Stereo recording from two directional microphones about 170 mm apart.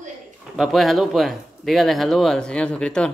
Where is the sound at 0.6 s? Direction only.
Centre (ahead or behind).